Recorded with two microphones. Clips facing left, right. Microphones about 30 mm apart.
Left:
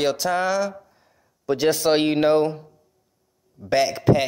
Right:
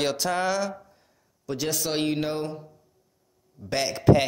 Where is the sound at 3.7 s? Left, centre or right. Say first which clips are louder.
Left 2 dB; centre.